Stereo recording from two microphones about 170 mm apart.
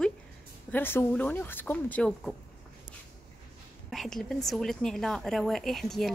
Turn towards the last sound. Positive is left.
turn(degrees=0)  # may be behind; listen again after turning